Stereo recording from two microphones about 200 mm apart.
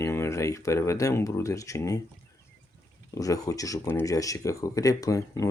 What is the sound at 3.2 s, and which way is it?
Speech, 15° left (ahead or behind).